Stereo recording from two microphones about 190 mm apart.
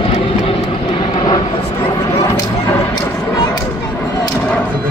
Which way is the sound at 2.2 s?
15° left (ahead or behind).